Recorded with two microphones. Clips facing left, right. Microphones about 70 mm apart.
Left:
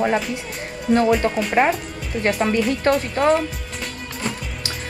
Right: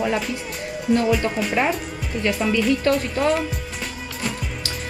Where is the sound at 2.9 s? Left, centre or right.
Left.